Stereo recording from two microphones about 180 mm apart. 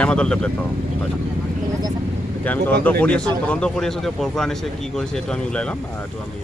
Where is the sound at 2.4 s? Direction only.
10° left (ahead or behind).